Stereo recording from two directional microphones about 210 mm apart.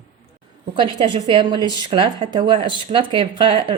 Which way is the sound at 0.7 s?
25° right (ahead or behind).